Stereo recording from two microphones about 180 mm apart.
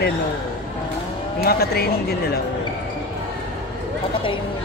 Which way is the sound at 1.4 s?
60° left (ahead or behind).